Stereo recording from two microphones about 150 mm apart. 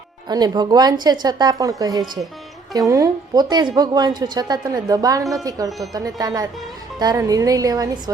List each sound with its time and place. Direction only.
0.3 s a woman's voice: 25° right (ahead or behind)